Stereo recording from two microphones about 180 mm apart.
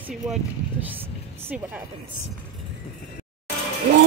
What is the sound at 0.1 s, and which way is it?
Speech, centre (ahead or behind).